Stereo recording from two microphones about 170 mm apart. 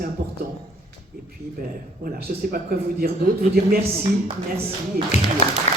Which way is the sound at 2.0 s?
60° right (ahead or behind).